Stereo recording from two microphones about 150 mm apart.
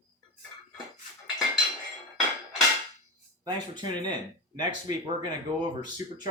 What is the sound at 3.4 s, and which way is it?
Speech, 30° right (ahead or behind).